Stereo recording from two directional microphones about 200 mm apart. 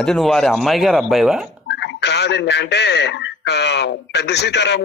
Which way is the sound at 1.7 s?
60° left (ahead or behind).